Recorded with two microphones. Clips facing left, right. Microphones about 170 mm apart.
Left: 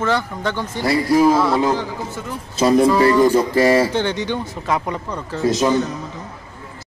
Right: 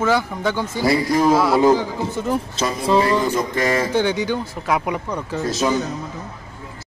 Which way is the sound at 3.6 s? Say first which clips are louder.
Left 6 dB; 35° left (ahead or behind).